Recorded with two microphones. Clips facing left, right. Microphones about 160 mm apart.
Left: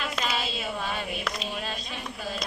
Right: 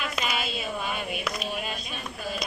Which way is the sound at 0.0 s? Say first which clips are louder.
Even; 10° right (ahead or behind).